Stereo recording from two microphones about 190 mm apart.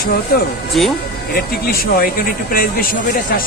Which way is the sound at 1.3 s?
50° left (ahead or behind).